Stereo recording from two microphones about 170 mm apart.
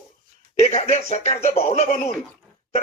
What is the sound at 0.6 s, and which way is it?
Speech, 40° left (ahead or behind).